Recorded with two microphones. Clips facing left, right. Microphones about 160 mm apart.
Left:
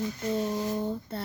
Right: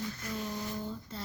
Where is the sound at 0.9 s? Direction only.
65° left (ahead or behind).